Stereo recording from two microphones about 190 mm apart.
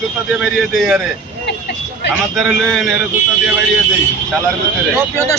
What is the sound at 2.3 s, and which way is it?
Speech, centre (ahead or behind).